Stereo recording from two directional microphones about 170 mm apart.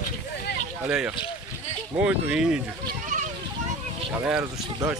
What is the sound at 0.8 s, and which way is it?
Speech, 5° right (ahead or behind).